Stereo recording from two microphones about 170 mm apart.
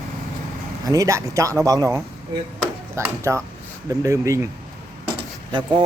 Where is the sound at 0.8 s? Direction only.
20° right (ahead or behind).